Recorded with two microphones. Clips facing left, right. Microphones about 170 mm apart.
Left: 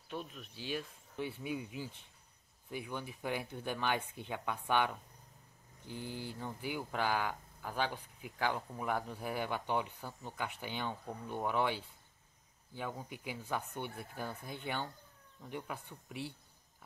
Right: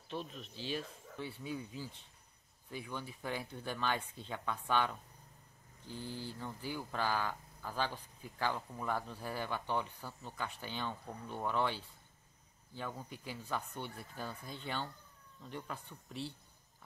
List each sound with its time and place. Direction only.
0.1 s speech: 10° left (ahead or behind)